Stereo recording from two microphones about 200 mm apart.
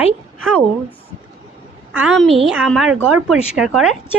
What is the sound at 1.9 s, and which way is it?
A woman's voice, centre (ahead or behind).